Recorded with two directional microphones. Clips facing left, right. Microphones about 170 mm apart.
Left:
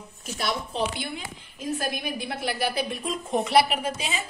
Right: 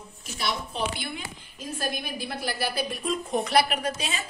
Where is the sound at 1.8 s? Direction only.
20° left (ahead or behind).